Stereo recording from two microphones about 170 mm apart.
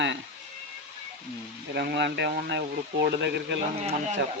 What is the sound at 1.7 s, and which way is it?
Speech, 70° right (ahead or behind).